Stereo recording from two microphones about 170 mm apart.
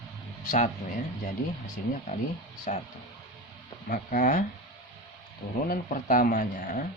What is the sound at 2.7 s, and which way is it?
Speech, 45° left (ahead or behind).